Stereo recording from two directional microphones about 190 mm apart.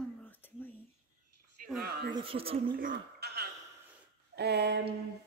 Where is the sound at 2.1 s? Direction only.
30° right (ahead or behind).